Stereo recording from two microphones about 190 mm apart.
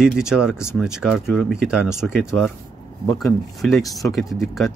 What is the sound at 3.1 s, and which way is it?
Speech, centre (ahead or behind).